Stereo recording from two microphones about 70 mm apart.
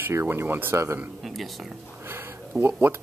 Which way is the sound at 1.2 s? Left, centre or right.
Centre.